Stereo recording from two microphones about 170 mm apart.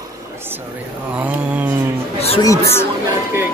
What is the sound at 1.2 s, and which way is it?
Mantra, 10° right (ahead or behind).